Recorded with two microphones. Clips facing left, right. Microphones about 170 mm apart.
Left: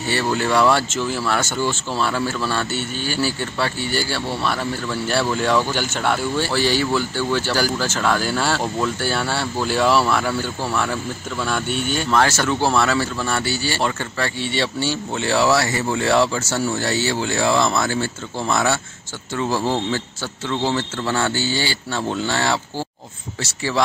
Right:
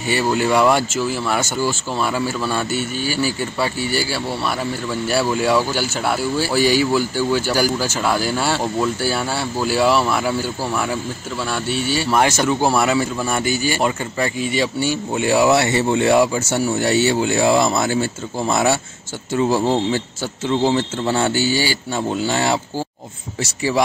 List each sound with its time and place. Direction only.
0.0 s speech: 15° right (ahead or behind)
12.2 s speech: 15° right (ahead or behind)